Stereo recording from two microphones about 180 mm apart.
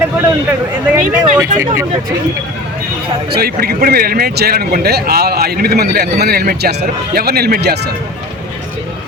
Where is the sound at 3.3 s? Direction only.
60° right (ahead or behind).